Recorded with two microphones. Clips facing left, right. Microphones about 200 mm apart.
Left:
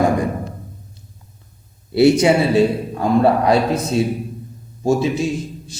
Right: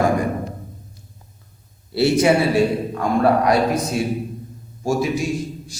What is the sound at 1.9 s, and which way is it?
A man's voice, 20° left (ahead or behind).